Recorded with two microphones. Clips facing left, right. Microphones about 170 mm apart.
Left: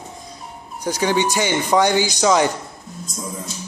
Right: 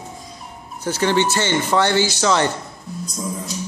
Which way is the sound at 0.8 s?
15° left (ahead or behind).